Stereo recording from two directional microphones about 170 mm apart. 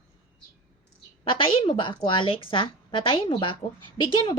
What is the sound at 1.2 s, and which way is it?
A woman's voice, 30° left (ahead or behind).